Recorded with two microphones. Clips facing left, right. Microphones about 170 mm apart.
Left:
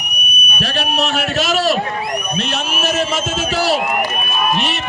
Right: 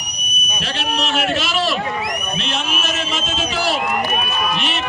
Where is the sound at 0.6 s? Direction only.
45° left (ahead or behind).